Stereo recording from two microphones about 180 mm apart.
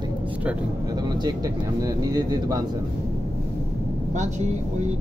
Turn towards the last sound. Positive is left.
turn(degrees=-40)  # may be behind; listen again after turning